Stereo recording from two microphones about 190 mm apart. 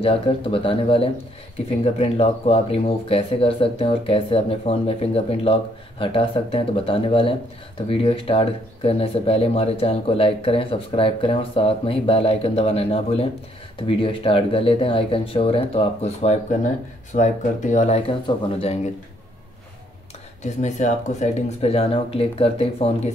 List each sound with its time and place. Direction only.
0.0 s speech: 30° left (ahead or behind)
20.4 s speech: 40° left (ahead or behind)